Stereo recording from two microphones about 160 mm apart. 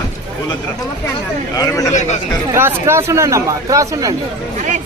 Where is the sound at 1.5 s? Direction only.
20° left (ahead or behind).